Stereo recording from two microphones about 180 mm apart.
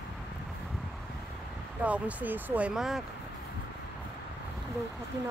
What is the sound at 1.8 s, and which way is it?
Speech, 10° right (ahead or behind).